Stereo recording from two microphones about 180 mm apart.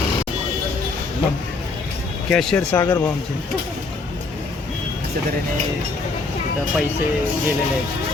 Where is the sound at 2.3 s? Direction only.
5° left (ahead or behind).